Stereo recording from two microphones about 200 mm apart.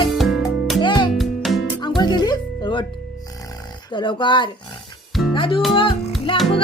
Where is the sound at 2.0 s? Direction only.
20° left (ahead or behind).